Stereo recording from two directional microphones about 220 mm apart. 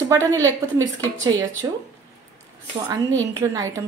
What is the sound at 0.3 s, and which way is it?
A woman's voice, 15° right (ahead or behind).